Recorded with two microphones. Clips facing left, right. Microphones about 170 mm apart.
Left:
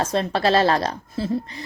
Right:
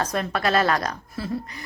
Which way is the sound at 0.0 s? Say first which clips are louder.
Left 4 dB; 25° left (ahead or behind).